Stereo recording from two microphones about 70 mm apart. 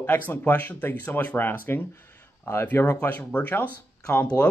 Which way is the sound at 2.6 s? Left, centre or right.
Left.